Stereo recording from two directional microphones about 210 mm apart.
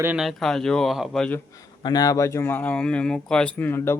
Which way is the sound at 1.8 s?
15° left (ahead or behind).